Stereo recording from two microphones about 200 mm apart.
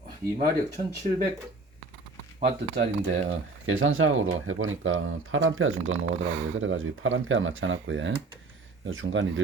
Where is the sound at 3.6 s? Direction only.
85° right.